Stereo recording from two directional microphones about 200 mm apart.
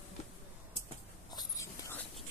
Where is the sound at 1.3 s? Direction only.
20° left (ahead or behind).